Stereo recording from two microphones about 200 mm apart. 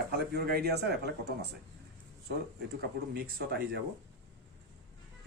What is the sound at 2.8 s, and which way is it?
Speech, 50° right (ahead or behind).